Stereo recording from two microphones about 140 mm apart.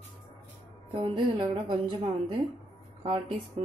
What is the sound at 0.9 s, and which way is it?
A woman's voice, 35° right (ahead or behind).